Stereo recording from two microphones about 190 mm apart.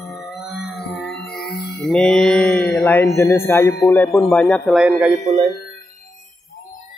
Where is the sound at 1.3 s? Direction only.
55° left (ahead or behind).